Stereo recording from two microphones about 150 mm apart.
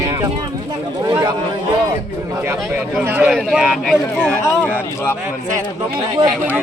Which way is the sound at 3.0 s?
15° right (ahead or behind).